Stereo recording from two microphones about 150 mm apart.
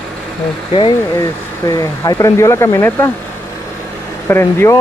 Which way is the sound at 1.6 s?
25° left (ahead or behind).